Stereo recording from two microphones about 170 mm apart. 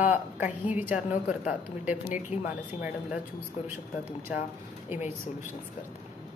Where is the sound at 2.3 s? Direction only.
40° left (ahead or behind).